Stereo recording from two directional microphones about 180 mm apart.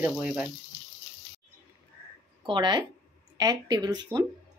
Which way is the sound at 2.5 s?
25° right (ahead or behind).